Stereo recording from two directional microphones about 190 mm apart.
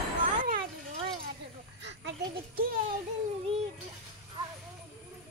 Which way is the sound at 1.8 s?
70° right (ahead or behind).